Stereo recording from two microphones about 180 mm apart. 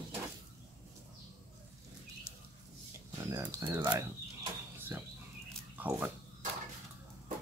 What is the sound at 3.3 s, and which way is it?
Speech, 15° right (ahead or behind).